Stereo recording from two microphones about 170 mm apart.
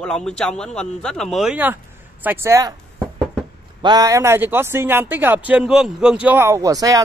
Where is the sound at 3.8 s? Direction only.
20° right (ahead or behind).